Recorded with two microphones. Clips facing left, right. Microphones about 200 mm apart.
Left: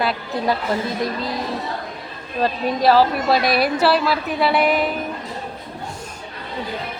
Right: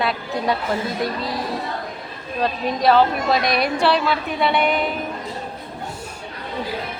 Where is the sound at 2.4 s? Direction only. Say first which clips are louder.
Left 2 dB; centre (ahead or behind).